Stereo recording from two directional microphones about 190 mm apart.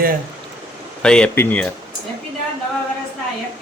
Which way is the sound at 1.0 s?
5° left (ahead or behind).